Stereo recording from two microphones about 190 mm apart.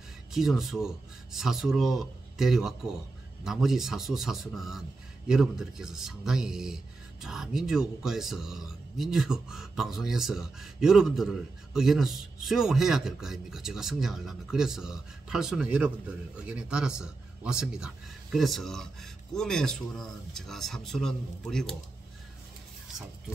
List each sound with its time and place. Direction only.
0.3 s speech: centre (ahead or behind)